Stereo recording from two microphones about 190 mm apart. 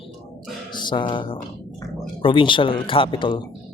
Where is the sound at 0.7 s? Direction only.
25° left (ahead or behind).